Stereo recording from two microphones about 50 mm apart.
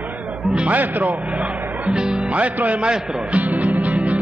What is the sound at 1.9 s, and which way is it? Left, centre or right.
Speech, centre.